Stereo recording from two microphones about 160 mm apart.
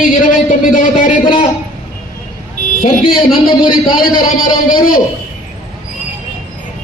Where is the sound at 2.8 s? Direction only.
65° left (ahead or behind).